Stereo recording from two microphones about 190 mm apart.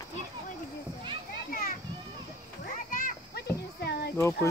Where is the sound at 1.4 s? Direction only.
50° left (ahead or behind).